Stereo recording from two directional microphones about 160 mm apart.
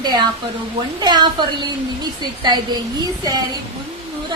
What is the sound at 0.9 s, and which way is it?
Speech, 25° right (ahead or behind).